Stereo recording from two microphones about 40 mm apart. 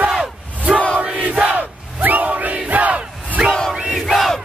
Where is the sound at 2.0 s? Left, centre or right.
Right.